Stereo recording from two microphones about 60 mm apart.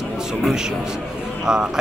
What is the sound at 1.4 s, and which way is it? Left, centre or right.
Speech, centre.